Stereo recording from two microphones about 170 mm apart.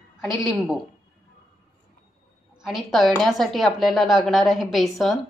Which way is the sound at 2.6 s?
Centre (ahead or behind).